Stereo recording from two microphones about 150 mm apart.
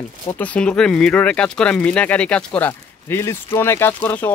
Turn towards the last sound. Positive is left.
turn(degrees=10)  # may be behind; listen again after turning